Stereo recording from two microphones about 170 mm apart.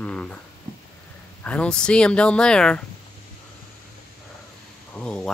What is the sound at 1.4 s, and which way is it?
Speech, 5° left (ahead or behind).